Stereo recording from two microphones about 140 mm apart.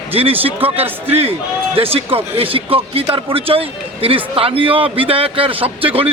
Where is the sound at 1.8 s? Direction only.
45° right (ahead or behind).